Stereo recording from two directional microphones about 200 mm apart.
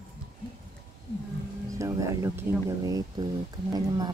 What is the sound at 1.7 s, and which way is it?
Speech, 15° right (ahead or behind).